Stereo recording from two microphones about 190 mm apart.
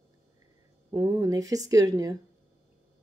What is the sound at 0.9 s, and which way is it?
A woman's voice, 15° right (ahead or behind).